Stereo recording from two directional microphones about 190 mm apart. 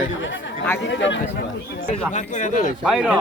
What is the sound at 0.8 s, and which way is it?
Speech, 70° left (ahead or behind).